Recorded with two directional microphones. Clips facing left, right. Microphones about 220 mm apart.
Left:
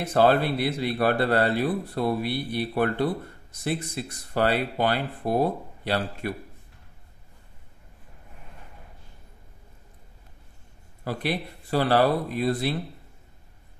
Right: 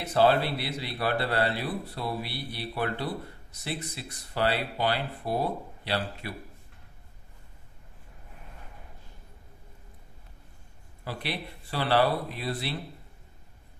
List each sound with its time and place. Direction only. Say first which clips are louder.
0.0 s a man's voice: left 3 dB; 50° left (ahead or behind)
11.1 s a man's voice: left 6 dB; 45° left (ahead or behind)